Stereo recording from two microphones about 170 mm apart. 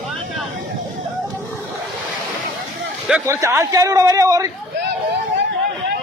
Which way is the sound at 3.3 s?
15° right (ahead or behind).